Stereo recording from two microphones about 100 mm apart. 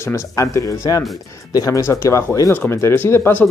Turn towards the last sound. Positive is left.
turn(degrees=20)  # may be behind; listen again after turning